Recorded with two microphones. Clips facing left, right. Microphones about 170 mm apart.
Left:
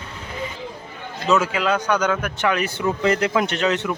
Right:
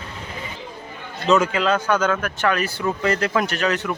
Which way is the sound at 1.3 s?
5° left (ahead or behind).